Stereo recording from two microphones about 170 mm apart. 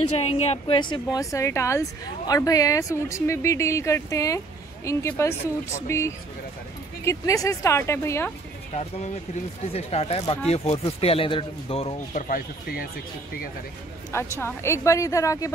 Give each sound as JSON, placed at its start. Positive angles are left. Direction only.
{"t": 0.1, "sound": "speech", "side_deg": 40}
{"t": 9.7, "sound": "speech", "side_deg": 35}
{"t": 12.2, "sound": "speech", "side_deg": 55}
{"t": 14.1, "sound": "speech", "side_deg": 15}